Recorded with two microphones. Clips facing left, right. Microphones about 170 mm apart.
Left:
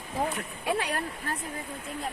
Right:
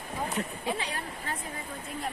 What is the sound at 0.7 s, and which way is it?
Speech, 70° left (ahead or behind).